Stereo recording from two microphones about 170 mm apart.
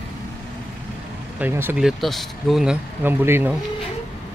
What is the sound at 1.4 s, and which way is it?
Speech, 10° right (ahead or behind).